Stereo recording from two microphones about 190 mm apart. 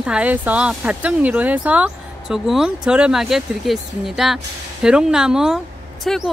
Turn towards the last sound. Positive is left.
turn(degrees=0)  # may be behind; listen again after turning